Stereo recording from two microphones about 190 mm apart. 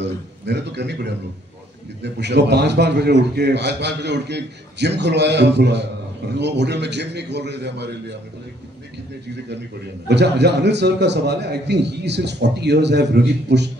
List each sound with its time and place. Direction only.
0.0 s a man's voice: 65° right (ahead or behind)
10.0 s a man's voice: 60° right (ahead or behind)